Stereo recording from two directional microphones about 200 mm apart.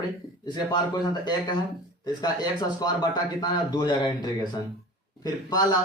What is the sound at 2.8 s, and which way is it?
Speech, 20° left (ahead or behind).